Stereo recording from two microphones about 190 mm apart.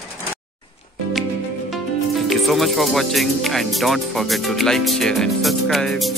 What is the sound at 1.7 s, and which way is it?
Music, centre (ahead or behind).